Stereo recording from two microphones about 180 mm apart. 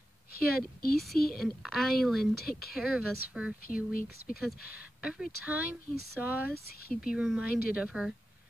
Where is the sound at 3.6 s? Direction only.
50° left (ahead or behind).